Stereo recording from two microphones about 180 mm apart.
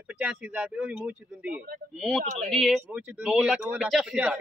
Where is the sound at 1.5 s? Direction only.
60° right (ahead or behind).